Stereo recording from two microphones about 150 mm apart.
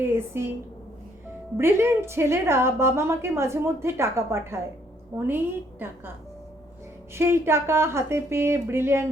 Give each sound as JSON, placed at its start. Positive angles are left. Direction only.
{"t": 0.0, "sound": "a woman's voice", "side_deg": -15}
{"t": 1.5, "sound": "a woman's voice", "side_deg": -15}
{"t": 7.1, "sound": "a woman's voice", "side_deg": -15}